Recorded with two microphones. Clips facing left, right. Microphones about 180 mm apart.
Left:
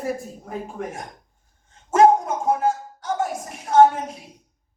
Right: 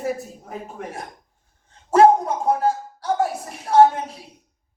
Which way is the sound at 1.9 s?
35° right (ahead or behind).